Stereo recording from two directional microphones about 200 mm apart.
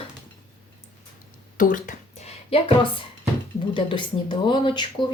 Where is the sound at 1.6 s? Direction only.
40° left (ahead or behind).